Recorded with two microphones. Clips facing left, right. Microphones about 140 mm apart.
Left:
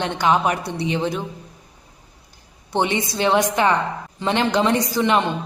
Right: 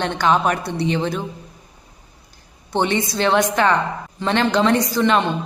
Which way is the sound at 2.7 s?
15° left (ahead or behind).